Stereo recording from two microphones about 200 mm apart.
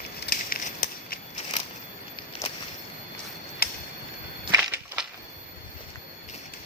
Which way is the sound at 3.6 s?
50° left (ahead or behind).